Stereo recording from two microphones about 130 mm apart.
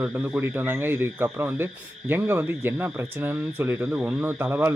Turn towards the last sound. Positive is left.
turn(degrees=-15)  # may be behind; listen again after turning